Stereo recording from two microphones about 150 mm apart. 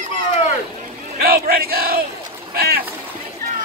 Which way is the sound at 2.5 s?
90° right.